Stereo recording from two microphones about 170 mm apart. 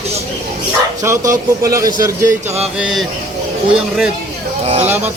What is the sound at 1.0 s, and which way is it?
A man's voice, 20° right (ahead or behind).